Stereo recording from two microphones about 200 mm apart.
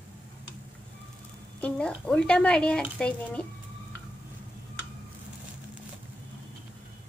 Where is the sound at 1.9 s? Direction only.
5° left (ahead or behind).